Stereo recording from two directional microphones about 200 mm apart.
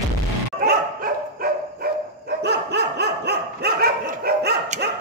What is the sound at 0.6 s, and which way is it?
Dog, 50° right (ahead or behind).